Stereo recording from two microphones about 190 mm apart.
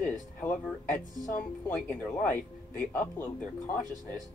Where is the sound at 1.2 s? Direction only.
10° left (ahead or behind).